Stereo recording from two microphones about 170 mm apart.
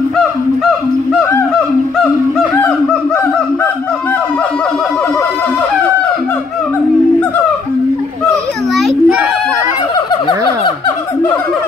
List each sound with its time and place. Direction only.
2.3 s honk: 5° left (ahead or behind)
8.3 s children playing: centre (ahead or behind)
9.9 s a sound: 30° left (ahead or behind)